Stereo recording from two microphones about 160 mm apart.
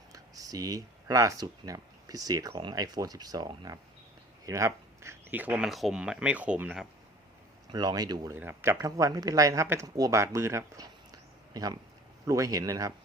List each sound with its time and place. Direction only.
0.1 s speech: 20° right (ahead or behind)
7.7 s speech: 25° right (ahead or behind)